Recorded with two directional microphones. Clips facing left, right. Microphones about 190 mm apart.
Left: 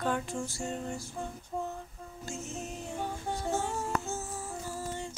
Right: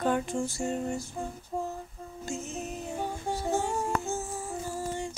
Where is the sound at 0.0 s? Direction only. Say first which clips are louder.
Right 4 dB; 20° right (ahead or behind).